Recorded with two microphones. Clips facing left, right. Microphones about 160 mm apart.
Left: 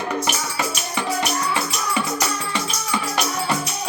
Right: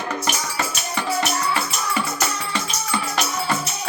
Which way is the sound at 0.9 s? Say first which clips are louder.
Right 1 dB; 15° left (ahead or behind).